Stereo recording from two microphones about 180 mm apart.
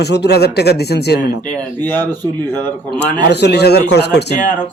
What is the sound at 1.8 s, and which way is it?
Speech, 10° left (ahead or behind).